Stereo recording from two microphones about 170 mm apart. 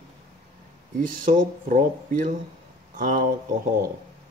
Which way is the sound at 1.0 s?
55° right (ahead or behind).